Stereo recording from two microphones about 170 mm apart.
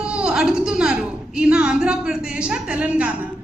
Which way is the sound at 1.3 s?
5° right (ahead or behind).